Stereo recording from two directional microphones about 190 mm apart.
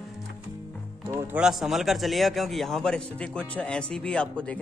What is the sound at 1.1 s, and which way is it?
A man's voice, 5° right (ahead or behind).